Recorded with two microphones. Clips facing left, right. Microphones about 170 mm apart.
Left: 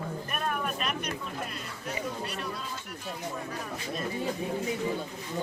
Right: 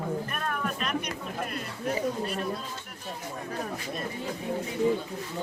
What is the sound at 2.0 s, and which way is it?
Speech, 45° right (ahead or behind).